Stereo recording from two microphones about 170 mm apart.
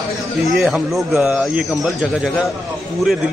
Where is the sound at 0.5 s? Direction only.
Centre (ahead or behind).